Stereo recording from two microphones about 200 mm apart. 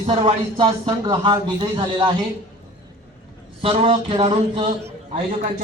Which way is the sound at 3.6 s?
30° right (ahead or behind).